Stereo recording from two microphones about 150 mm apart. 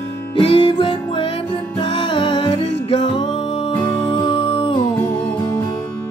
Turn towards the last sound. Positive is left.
turn(degrees=35)  # may be behind; listen again after turning